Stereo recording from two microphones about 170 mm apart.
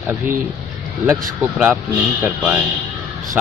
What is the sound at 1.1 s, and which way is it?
Speech, 10° right (ahead or behind).